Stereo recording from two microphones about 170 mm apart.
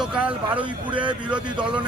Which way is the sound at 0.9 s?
30° right (ahead or behind).